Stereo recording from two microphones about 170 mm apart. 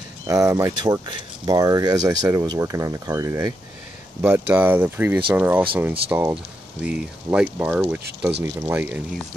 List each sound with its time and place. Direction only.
0.3 s speech: 20° right (ahead or behind)